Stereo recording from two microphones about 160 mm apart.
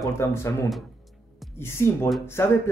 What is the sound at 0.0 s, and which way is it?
Speech, 15° left (ahead or behind).